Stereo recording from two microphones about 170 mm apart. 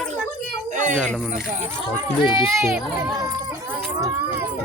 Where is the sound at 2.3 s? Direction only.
30° left (ahead or behind).